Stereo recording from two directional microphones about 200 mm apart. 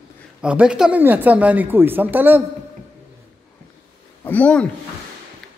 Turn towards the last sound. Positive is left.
turn(degrees=5)  # may be behind; listen again after turning